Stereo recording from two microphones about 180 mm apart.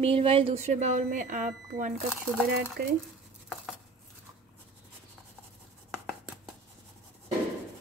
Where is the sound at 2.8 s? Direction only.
60° right (ahead or behind).